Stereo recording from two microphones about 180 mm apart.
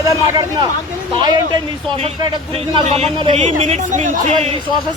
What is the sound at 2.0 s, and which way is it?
Speech, 30° right (ahead or behind).